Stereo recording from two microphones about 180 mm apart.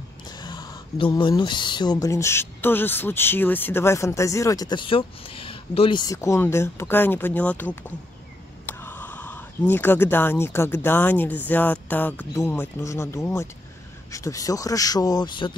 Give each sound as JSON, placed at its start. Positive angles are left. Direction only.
{"t": 0.4, "sound": "speech", "side_deg": 25}
{"t": 8.6, "sound": "speech", "side_deg": 10}